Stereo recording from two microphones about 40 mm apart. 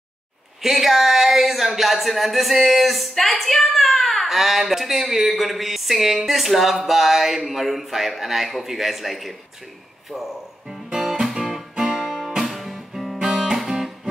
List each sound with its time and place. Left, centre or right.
0.6 s speech: centre
11.2 s music: centre
11.8 s guitar: centre
13.3 s music: centre